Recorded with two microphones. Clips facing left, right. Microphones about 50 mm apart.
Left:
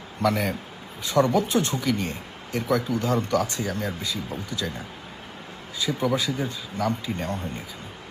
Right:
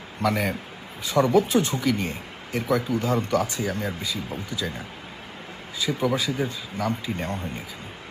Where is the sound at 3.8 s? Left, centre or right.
Right.